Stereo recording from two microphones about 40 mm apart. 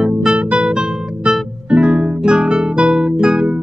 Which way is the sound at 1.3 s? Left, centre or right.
Right.